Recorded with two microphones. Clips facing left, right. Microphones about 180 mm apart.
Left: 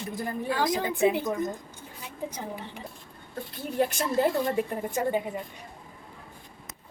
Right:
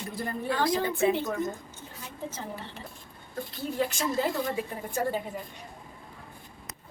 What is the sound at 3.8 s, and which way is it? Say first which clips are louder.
Speech: left 4 dB; 50° left (ahead or behind).